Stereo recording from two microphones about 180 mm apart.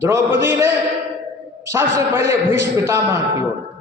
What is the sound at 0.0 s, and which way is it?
A man's voice, 15° right (ahead or behind).